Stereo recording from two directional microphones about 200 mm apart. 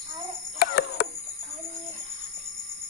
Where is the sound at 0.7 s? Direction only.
50° left (ahead or behind).